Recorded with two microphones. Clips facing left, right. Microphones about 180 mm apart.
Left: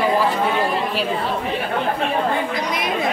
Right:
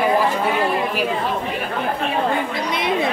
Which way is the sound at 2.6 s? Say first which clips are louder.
Right 2 dB; 25° right (ahead or behind).